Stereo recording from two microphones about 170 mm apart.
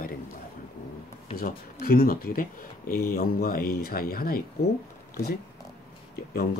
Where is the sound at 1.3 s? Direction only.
60° left (ahead or behind).